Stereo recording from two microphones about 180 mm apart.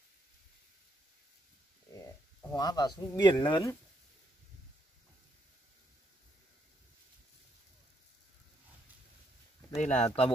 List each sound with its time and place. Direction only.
2.0 s speech: 20° left (ahead or behind)
9.8 s speech: 40° left (ahead or behind)